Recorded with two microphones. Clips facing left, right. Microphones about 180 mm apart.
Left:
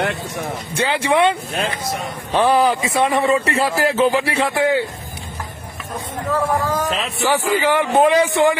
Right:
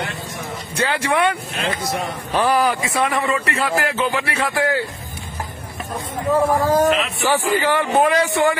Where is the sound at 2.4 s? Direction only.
25° left (ahead or behind).